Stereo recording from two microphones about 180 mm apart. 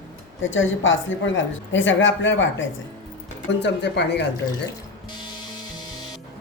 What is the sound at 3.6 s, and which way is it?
Speech, 70° left (ahead or behind).